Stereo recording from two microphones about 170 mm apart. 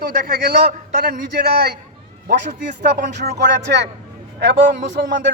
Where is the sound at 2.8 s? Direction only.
80° right.